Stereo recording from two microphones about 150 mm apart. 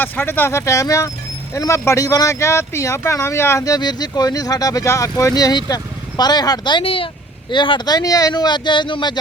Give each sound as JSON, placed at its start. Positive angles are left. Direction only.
{"t": 0.0, "sound": "speech", "side_deg": 10}